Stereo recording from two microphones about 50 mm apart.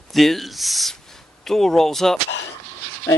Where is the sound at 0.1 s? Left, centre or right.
Centre.